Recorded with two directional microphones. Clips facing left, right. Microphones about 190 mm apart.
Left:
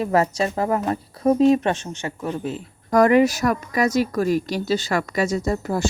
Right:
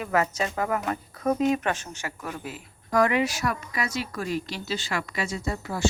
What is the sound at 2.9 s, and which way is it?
Speech, 45° left (ahead or behind).